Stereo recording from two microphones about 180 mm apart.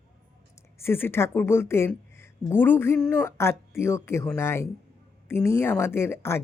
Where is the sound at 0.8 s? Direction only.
10° left (ahead or behind).